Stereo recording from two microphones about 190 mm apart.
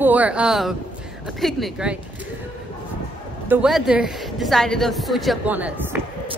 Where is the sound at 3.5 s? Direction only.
5° right (ahead or behind).